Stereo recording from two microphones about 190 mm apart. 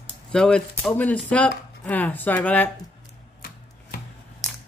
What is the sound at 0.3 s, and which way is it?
Speech, 5° left (ahead or behind).